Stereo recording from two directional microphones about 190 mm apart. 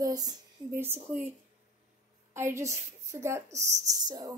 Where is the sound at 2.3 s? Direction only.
15° right (ahead or behind).